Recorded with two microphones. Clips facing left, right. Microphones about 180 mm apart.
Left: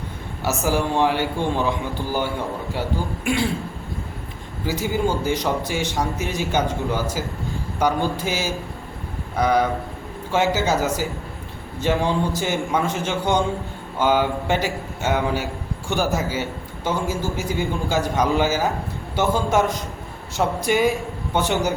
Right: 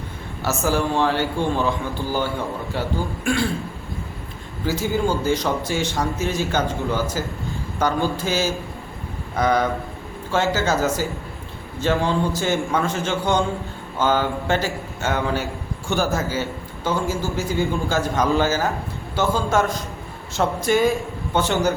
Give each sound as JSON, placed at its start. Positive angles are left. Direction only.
{"t": 0.4, "sound": "a man's voice", "side_deg": 15}
{"t": 3.2, "sound": "speech", "side_deg": 20}
{"t": 4.6, "sound": "a man's voice", "side_deg": 15}